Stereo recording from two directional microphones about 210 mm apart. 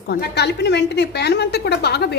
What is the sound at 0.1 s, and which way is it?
A woman's voice, 50° left (ahead or behind).